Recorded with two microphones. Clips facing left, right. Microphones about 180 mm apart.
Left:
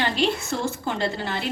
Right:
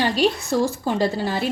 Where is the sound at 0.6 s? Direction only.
35° right (ahead or behind).